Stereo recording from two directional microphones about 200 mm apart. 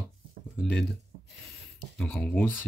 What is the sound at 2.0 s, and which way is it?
Speech, 5° left (ahead or behind).